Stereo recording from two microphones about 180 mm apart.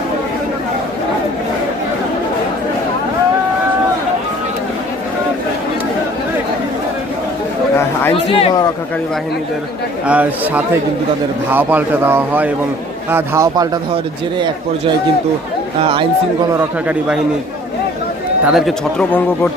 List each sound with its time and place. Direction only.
8.1 s speech: 30° left (ahead or behind)
10.1 s a man's voice: 10° right (ahead or behind); by 16.0 s 30° right (ahead or behind)
18.4 s speech: centre (ahead or behind)